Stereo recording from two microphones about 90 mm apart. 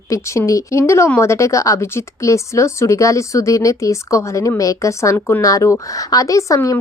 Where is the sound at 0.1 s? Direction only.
35° left (ahead or behind).